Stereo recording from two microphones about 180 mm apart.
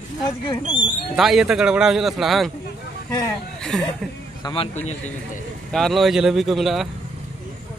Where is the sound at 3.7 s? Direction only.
5° left (ahead or behind).